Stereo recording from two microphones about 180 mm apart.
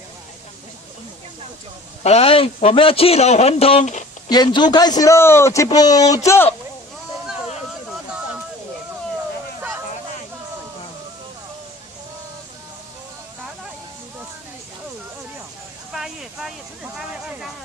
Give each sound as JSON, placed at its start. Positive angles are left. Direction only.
{"t": 2.0, "sound": "a man's voice", "side_deg": 35}
{"t": 4.3, "sound": "a man's voice", "side_deg": 25}
{"t": 15.9, "sound": "a sound", "side_deg": 0}